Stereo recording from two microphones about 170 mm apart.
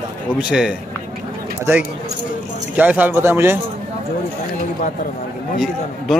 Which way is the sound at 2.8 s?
10° right (ahead or behind).